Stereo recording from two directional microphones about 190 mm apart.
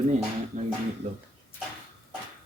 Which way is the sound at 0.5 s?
35° right (ahead or behind).